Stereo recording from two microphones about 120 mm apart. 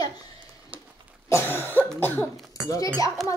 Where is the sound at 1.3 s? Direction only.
20° left (ahead or behind).